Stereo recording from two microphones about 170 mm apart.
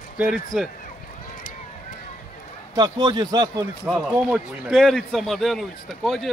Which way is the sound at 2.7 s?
25° right (ahead or behind).